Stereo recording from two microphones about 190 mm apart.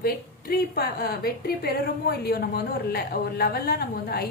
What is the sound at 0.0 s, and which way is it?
A woman's voice, 55° left (ahead or behind).